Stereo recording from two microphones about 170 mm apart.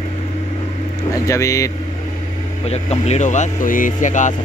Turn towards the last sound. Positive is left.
turn(degrees=45)  # may be behind; listen again after turning